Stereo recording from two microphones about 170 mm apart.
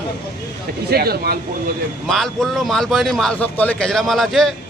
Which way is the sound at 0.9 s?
65° right (ahead or behind).